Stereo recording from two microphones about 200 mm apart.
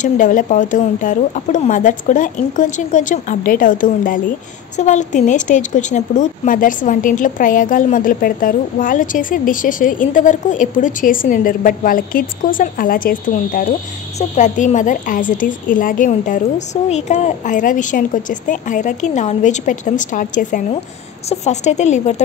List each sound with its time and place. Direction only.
0.0 s speech: 40° left (ahead or behind)